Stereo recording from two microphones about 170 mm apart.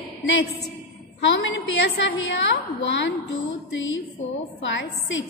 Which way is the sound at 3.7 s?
90° left.